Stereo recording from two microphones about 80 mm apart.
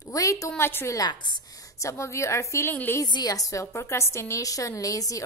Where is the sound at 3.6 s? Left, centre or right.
Left.